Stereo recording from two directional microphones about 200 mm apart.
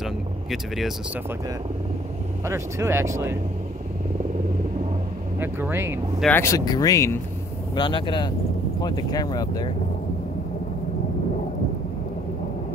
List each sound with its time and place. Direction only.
0.0 s vehicle: centre (ahead or behind)
2.4 s speech: 15° right (ahead or behind)
5.4 s speech: 10° right (ahead or behind)
6.2 s speech: 10° left (ahead or behind)